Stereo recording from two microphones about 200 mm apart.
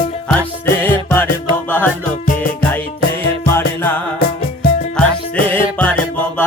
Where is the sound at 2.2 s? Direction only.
45° left (ahead or behind).